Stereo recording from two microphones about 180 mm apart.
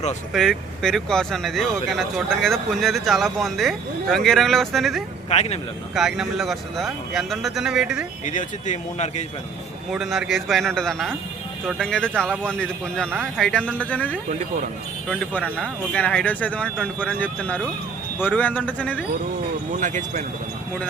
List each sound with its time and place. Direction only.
0.3 s speech: centre (ahead or behind)
5.3 s speech: 35° left (ahead or behind)
5.9 s speech: centre (ahead or behind)
8.2 s speech: 45° left (ahead or behind)
9.9 s speech: 5° right (ahead or behind)
19.7 s speech: 45° right (ahead or behind)